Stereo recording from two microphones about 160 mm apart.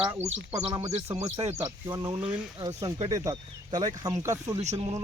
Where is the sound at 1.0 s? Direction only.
15° right (ahead or behind).